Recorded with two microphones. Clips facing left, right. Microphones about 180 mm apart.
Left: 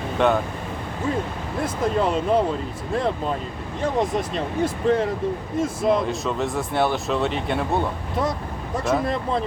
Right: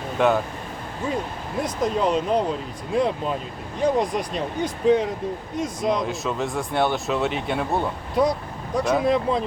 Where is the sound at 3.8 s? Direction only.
Centre (ahead or behind).